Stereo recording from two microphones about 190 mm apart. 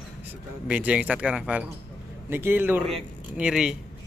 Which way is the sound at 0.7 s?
5° right (ahead or behind).